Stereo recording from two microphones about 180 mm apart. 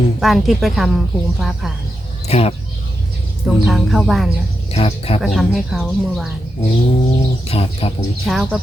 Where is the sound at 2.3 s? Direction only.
35° left (ahead or behind).